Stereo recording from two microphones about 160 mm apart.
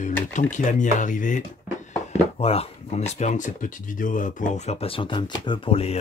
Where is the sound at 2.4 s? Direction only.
40° left (ahead or behind).